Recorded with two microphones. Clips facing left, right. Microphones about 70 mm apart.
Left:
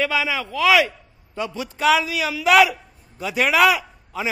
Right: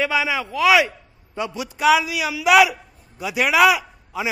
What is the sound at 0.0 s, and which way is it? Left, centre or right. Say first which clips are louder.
A man's voice: right 1 dB; centre.